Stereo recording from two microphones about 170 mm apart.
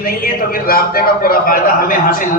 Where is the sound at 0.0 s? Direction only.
60° left (ahead or behind).